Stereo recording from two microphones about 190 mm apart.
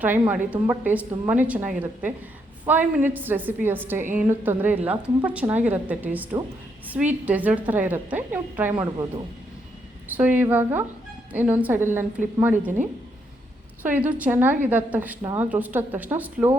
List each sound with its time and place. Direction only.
0.0 s a woman's voice: 10° right (ahead or behind)
8.7 s speech: 20° right (ahead or behind)
10.2 s a woman's voice: 10° right (ahead or behind)
13.8 s a woman's voice: 10° right (ahead or behind)